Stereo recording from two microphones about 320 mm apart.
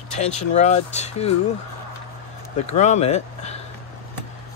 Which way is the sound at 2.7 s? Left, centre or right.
Left.